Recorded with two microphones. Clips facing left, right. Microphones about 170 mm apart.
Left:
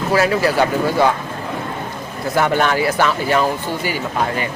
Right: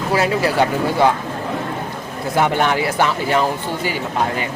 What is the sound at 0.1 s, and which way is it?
Speech, 25° right (ahead or behind).